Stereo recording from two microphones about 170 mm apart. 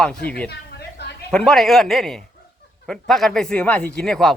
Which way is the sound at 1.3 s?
Centre (ahead or behind).